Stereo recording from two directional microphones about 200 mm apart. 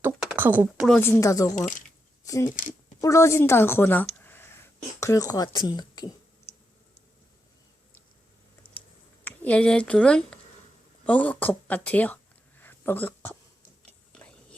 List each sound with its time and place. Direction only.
0.3 s speech: 10° right (ahead or behind)
0.9 s a woman's voice: 10° left (ahead or behind)
9.2 s speech: 10° left (ahead or behind)
14.1 s biting: 5° left (ahead or behind)